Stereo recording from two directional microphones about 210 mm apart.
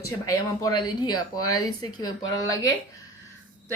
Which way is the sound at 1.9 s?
20° left (ahead or behind).